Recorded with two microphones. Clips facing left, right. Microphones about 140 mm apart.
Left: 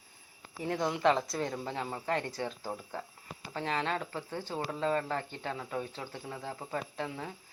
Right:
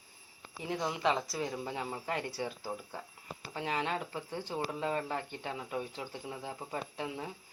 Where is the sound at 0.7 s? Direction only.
Centre (ahead or behind).